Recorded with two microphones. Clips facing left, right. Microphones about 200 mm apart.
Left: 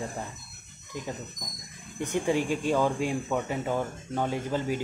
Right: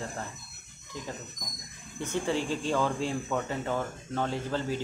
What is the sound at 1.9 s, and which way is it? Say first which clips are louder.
Speech: left 3 dB; 15° left (ahead or behind).